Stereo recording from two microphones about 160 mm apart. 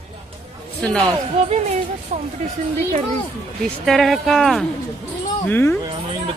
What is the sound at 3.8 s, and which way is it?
Speech, centre (ahead or behind).